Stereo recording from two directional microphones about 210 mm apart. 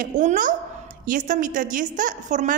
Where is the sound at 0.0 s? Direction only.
35° right (ahead or behind).